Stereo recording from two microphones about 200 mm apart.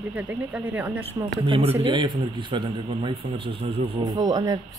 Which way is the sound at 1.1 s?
20° right (ahead or behind).